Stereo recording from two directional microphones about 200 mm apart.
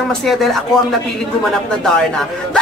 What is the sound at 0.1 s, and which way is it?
Speech, centre (ahead or behind).